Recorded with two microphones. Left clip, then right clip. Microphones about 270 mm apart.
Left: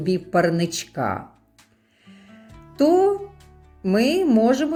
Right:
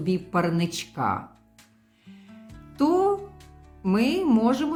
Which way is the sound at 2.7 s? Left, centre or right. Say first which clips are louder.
Left 5 dB; centre.